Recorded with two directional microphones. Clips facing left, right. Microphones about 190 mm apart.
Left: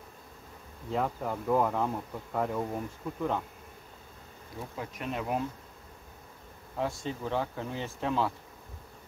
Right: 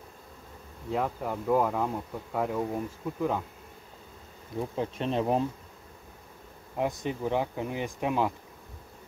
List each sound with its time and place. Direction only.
0.9 s speech: 5° right (ahead or behind)
4.7 s bee: 30° right (ahead or behind)
6.8 s speech: 20° right (ahead or behind)